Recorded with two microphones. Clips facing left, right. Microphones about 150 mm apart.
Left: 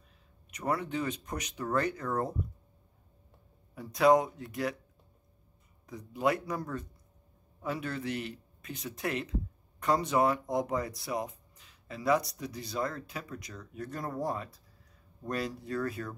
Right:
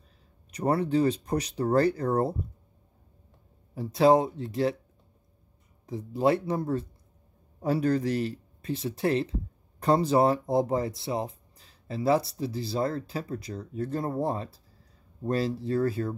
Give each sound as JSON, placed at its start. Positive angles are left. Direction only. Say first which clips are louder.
{"t": 0.5, "sound": "speech", "louder": "right 7 dB", "side_deg": -35}
{"t": 3.7, "sound": "speech", "louder": "right 3 dB", "side_deg": -30}
{"t": 5.9, "sound": "speech", "louder": "right 6 dB", "side_deg": -30}